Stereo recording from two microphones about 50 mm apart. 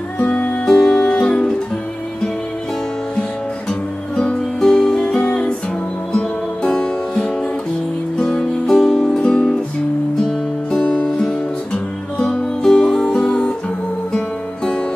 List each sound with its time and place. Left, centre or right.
0.3 s music: left
4.6 s music: centre
6.6 s music: centre
10.7 s music: left